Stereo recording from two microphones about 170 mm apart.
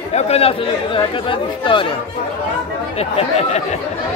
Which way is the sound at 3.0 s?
40° left (ahead or behind).